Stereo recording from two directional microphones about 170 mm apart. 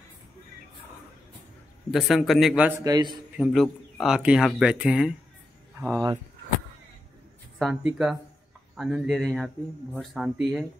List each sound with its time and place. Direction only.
1.9 s speech: centre (ahead or behind)
2.8 s a man's voice: 25° right (ahead or behind)
3.3 s speech: centre (ahead or behind)
7.5 s speech: centre (ahead or behind)